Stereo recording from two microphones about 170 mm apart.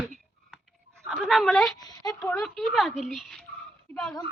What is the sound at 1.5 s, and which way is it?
Speech, 20° left (ahead or behind).